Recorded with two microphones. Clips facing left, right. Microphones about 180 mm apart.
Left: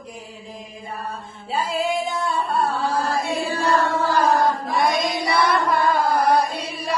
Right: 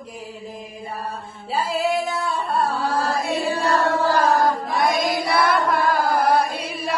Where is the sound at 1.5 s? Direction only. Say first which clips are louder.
Right 1 dB; centre (ahead or behind).